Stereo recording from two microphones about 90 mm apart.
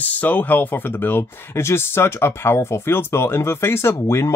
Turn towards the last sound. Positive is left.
turn(degrees=30)  # may be behind; listen again after turning